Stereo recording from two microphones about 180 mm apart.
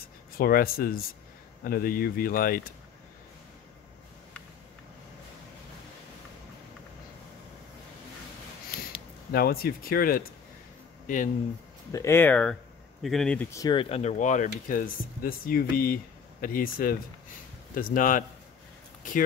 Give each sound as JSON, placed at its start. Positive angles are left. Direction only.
{"t": 0.4, "sound": "speech", "side_deg": 55}
{"t": 9.3, "sound": "speech", "side_deg": 55}
{"t": 11.9, "sound": "a man's voice", "side_deg": 15}
{"t": 13.5, "sound": "speech", "side_deg": 20}
{"t": 13.7, "sound": "speech", "side_deg": 35}